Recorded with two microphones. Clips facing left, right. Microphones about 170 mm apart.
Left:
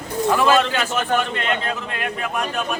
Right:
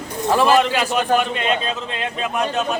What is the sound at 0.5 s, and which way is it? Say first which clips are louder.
A man's voice: right 2 dB; 15° right (ahead or behind).